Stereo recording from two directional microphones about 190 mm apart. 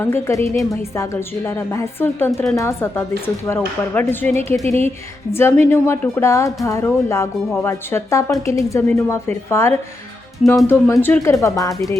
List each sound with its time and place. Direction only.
0.0 s speech: 15° left (ahead or behind)
4.6 s speech: 35° right (ahead or behind)
5.3 s speech: 10° left (ahead or behind)